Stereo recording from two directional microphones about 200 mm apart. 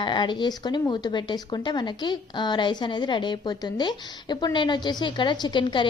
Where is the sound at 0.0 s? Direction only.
20° left (ahead or behind).